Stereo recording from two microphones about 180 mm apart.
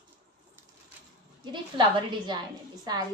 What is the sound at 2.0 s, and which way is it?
A woman's voice, 25° right (ahead or behind).